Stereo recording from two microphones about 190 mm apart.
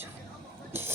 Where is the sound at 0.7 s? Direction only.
10° right (ahead or behind).